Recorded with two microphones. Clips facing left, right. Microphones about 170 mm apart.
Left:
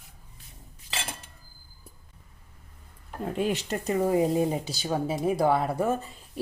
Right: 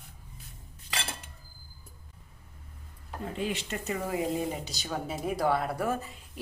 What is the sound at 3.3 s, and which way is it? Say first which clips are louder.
A woman's voice: left 6 dB; 45° left (ahead or behind).